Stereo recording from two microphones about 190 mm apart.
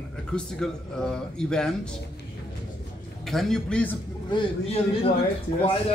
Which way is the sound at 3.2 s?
Centre (ahead or behind).